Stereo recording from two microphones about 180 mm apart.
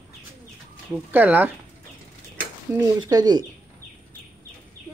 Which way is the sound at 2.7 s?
15° right (ahead or behind).